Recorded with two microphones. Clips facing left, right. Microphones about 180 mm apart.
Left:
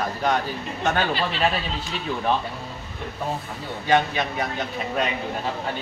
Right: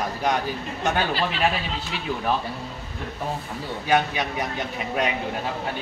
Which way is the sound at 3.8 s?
10° right (ahead or behind).